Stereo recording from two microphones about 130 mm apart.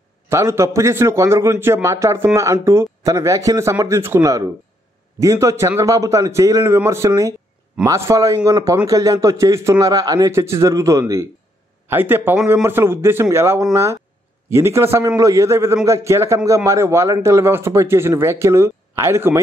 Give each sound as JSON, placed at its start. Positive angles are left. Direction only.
{"t": 0.3, "sound": "a man's voice", "side_deg": -20}